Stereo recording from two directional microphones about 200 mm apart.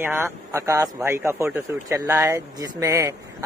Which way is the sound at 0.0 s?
10° right (ahead or behind).